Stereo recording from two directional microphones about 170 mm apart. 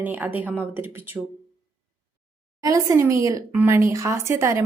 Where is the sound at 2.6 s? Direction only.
20° right (ahead or behind).